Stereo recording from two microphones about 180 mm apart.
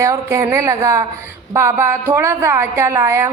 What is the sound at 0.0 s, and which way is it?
A woman's voice, 15° right (ahead or behind).